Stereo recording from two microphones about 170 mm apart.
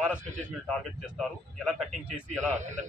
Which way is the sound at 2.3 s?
45° right (ahead or behind).